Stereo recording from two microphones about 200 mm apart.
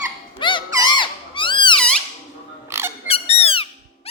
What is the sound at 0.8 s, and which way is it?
Squeak, 25° left (ahead or behind).